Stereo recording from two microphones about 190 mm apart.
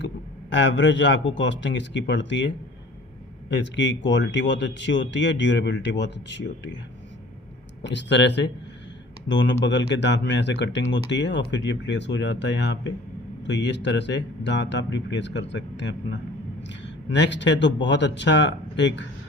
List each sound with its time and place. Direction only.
0.5 s speech: 70° left (ahead or behind)
3.5 s speech: 70° left (ahead or behind)
7.8 s speech: 65° left (ahead or behind)